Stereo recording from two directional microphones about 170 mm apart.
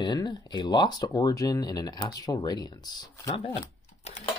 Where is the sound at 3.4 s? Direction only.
35° left (ahead or behind).